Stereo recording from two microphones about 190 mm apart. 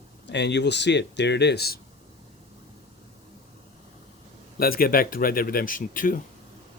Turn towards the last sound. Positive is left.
turn(degrees=45)  # may be behind; listen again after turning